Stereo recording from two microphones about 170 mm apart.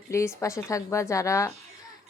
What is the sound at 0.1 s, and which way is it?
A woman's voice, 15° left (ahead or behind).